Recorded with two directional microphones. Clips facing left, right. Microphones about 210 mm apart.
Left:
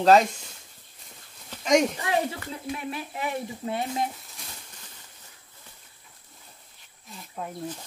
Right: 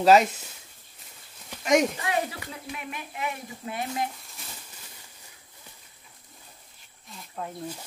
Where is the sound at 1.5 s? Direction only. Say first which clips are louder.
Left 1 dB; 5° right (ahead or behind).